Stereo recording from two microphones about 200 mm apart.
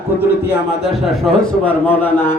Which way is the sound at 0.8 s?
Centre (ahead or behind).